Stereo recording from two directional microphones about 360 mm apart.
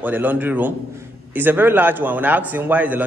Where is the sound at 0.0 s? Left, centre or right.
Centre.